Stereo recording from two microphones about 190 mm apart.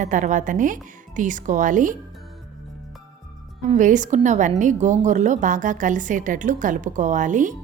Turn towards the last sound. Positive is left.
turn(degrees=-40)  # may be behind; listen again after turning